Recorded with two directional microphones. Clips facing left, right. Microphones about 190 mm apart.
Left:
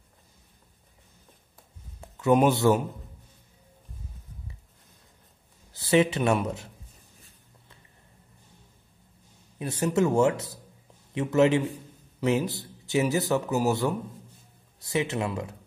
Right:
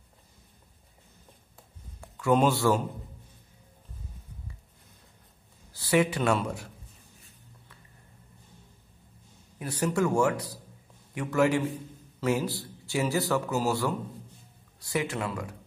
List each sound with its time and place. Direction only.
2.0 s a man's voice: 20° left (ahead or behind)
5.7 s a man's voice: 25° left (ahead or behind)
9.6 s a man's voice: 20° left (ahead or behind)